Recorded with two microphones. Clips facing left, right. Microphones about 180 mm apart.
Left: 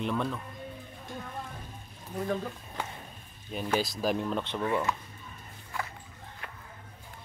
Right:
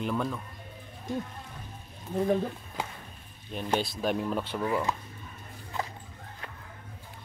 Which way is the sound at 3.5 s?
5° left (ahead or behind).